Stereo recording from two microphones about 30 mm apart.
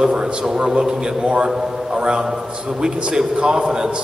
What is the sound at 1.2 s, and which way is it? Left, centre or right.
A man's voice, right.